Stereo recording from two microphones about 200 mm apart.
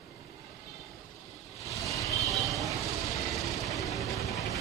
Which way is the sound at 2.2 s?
Centre (ahead or behind).